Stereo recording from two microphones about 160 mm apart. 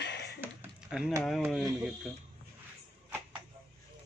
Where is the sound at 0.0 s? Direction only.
90° left.